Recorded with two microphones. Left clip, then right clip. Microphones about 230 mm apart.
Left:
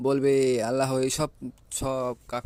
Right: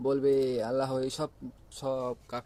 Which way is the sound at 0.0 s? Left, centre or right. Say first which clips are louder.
Left 3 dB; left.